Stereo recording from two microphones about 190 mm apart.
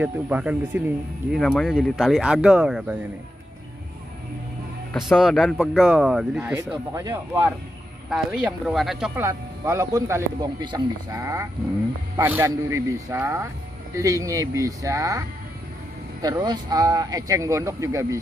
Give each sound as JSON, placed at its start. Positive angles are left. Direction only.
{"t": 0.0, "sound": "speech", "side_deg": -10}
{"t": 4.9, "sound": "speech", "side_deg": 0}
{"t": 6.5, "sound": "speech", "side_deg": -15}
{"t": 8.1, "sound": "speech", "side_deg": -5}
{"t": 9.2, "sound": "speech", "side_deg": -15}